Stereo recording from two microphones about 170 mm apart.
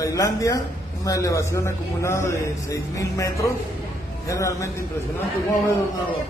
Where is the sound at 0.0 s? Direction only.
20° left (ahead or behind).